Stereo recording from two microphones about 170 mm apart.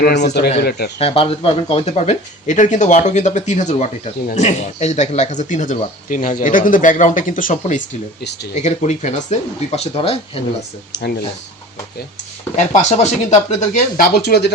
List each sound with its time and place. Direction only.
0.0 s speech: 80° left
0.6 s speech: 70° left (ahead or behind)
0.9 s speech: 35° left (ahead or behind)
8.2 s speech: 85° left
8.5 s speech: 45° left (ahead or behind)
10.9 s speech: 90° left
12.5 s speech: 45° left (ahead or behind); by 14.5 s 70° left (ahead or behind)